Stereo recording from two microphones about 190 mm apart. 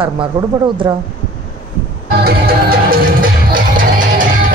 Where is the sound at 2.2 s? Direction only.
55° right (ahead or behind).